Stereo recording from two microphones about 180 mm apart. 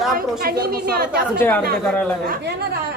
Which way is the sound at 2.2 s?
60° right (ahead or behind).